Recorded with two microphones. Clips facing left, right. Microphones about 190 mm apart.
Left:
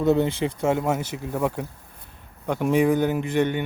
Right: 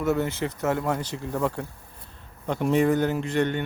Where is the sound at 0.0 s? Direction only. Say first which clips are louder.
Left 4 dB; 20° left (ahead or behind).